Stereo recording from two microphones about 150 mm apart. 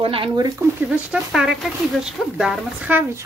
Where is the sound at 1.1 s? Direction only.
5° right (ahead or behind).